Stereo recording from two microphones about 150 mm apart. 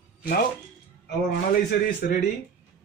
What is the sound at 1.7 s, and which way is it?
Speech, 90° left.